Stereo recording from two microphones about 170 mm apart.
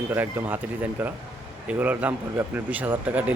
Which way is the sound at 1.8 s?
10° right (ahead or behind).